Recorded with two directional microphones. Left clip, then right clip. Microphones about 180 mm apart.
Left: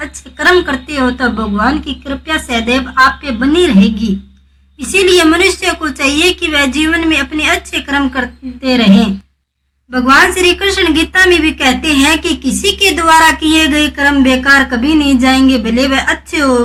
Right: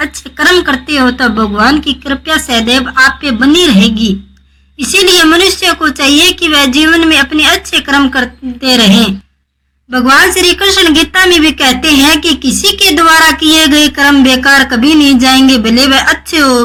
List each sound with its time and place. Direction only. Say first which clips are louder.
0.0 s speech: right 3 dB; 25° right (ahead or behind)